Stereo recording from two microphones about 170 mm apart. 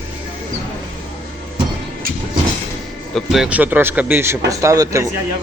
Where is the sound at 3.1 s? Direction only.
Centre (ahead or behind); by 5.1 s 20° right (ahead or behind).